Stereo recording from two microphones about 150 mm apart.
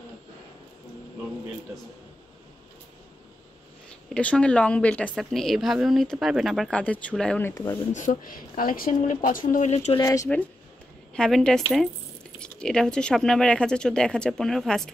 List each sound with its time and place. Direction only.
4.1 s a woman's voice: 5° left (ahead or behind)
7.9 s speech: 60° left (ahead or behind)
9.9 s speech: 20° left (ahead or behind)
11.1 s a woman's voice: 5° left (ahead or behind)